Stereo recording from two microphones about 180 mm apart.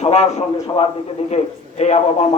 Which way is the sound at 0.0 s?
35° left (ahead or behind).